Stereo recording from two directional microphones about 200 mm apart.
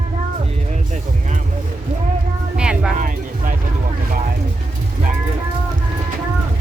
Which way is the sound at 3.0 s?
40° right (ahead or behind).